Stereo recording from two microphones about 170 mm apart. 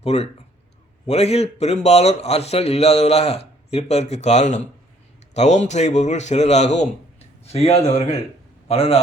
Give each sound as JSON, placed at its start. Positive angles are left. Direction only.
{"t": 0.0, "sound": "a man's voice", "side_deg": 35}